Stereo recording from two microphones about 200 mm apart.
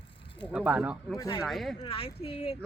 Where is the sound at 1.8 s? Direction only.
25° left (ahead or behind).